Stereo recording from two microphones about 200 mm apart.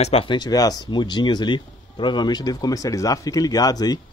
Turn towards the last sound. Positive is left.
turn(degrees=20)  # may be behind; listen again after turning